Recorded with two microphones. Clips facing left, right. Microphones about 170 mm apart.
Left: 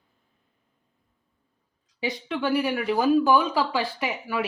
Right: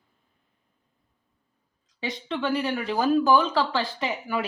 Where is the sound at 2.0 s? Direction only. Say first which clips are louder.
Left 1 dB; 5° left (ahead or behind).